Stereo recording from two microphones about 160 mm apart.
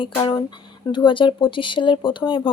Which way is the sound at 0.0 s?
30° left (ahead or behind).